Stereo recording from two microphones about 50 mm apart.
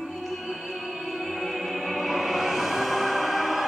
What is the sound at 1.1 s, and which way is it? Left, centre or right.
Music, centre.